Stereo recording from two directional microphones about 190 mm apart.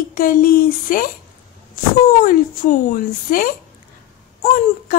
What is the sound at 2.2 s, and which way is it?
Speech, 45° left (ahead or behind).